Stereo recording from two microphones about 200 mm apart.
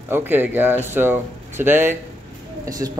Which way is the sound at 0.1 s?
10° right (ahead or behind).